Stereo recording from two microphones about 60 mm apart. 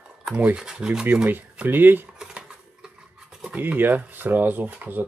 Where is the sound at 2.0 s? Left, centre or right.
Centre.